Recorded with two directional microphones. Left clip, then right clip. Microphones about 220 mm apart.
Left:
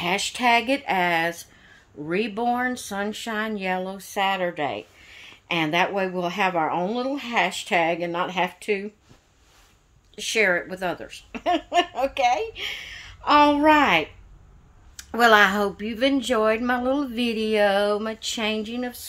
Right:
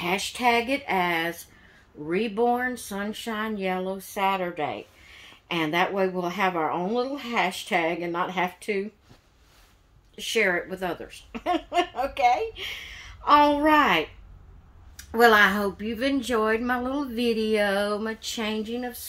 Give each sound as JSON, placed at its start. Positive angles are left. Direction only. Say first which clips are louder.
{"t": 0.0, "sound": "speech", "louder": "left 2 dB", "side_deg": 40}
{"t": 10.1, "sound": "speech", "louder": "left 3 dB", "side_deg": 45}